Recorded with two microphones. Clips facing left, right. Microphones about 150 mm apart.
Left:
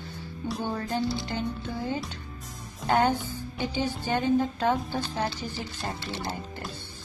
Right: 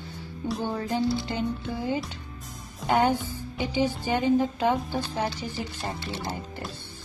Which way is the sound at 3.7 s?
15° right (ahead or behind).